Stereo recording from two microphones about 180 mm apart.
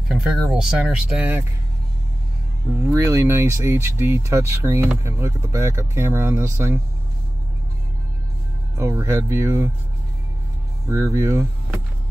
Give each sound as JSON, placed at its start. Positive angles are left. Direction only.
{"t": 0.1, "sound": "speech", "side_deg": -5}
{"t": 2.9, "sound": "speech", "side_deg": -15}
{"t": 8.7, "sound": "speech", "side_deg": -15}
{"t": 10.9, "sound": "speech", "side_deg": -15}